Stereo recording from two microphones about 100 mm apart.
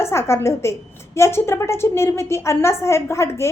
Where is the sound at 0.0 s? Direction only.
25° left (ahead or behind).